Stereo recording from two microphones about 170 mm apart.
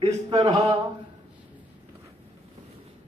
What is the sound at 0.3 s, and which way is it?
Speech, 20° right (ahead or behind).